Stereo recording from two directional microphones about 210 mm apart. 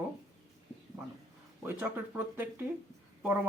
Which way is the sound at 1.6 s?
10° right (ahead or behind).